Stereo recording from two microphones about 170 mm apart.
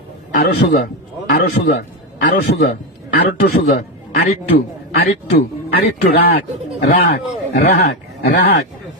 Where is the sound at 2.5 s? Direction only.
60° left (ahead or behind).